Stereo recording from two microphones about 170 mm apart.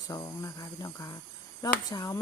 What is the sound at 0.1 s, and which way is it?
Speech, 20° left (ahead or behind).